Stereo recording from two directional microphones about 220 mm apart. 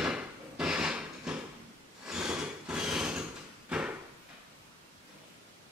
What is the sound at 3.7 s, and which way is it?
Drawer open or close, 5° right (ahead or behind).